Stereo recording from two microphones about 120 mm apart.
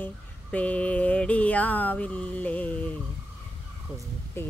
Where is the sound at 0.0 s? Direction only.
10° left (ahead or behind).